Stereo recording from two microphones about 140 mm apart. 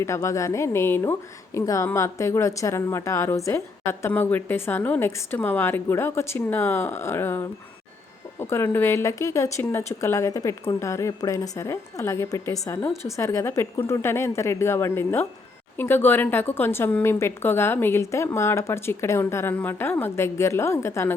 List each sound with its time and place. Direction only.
0.0 s a woman's voice: 20° left (ahead or behind)